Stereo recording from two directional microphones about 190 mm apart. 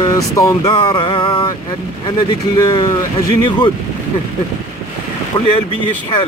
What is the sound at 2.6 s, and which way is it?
Vehicle, 25° left (ahead or behind).